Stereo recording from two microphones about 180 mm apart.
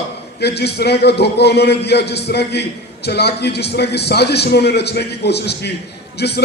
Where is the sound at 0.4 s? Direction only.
65° left (ahead or behind).